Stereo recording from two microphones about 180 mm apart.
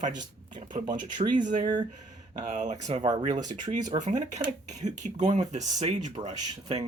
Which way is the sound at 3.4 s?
20° right (ahead or behind).